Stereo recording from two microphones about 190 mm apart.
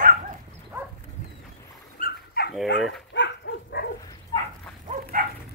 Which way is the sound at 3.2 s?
70° left (ahead or behind).